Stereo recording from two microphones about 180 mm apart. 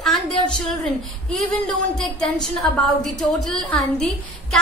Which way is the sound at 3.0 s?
Centre (ahead or behind).